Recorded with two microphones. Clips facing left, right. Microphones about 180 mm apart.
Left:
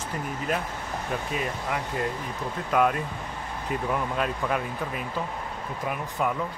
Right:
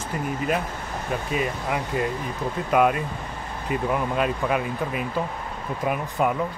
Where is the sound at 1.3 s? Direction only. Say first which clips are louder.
Right 6 dB; 10° right (ahead or behind).